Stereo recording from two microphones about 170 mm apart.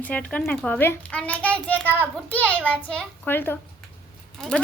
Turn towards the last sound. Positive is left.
turn(degrees=5)  # may be behind; listen again after turning